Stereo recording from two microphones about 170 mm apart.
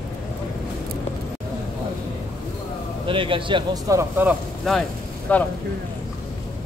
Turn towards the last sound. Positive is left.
turn(degrees=10)  # may be behind; listen again after turning